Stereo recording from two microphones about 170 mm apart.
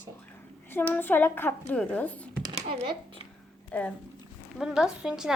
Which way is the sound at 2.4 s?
25° right (ahead or behind).